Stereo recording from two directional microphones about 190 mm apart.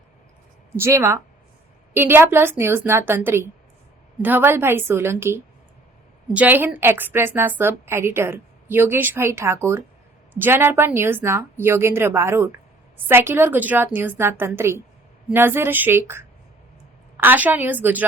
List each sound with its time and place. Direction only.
0.8 s a woman's voice: 15° right (ahead or behind)